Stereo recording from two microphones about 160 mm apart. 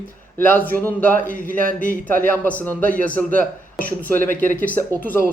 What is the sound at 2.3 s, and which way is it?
Speech, 10° left (ahead or behind).